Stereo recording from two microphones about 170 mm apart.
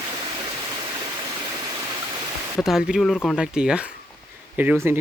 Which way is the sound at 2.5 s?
Centre (ahead or behind).